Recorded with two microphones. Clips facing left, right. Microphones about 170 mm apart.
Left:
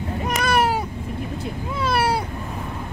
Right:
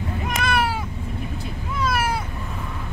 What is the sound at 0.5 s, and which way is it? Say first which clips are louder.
Cat: left 4 dB; 40° left (ahead or behind).